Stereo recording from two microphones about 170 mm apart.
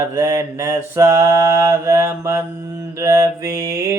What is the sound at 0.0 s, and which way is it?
Mantra, 15° right (ahead or behind).